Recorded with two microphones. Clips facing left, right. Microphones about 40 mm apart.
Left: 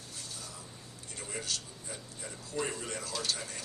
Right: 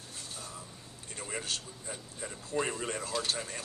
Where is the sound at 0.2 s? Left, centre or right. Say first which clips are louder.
Right 2 dB; right.